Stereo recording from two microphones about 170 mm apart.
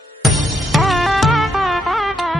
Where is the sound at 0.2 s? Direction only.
Centre (ahead or behind).